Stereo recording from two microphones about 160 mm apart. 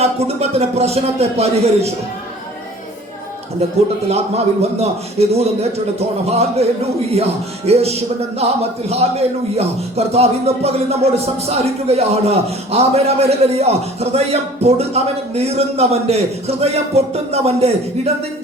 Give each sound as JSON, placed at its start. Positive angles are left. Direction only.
{"t": 0.0, "sound": "speech", "side_deg": -40}
{"t": 4.1, "sound": "speech", "side_deg": -40}
{"t": 7.7, "sound": "speech", "side_deg": -40}